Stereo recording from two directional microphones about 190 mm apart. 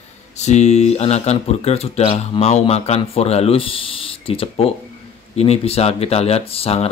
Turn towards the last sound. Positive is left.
turn(degrees=30)  # may be behind; listen again after turning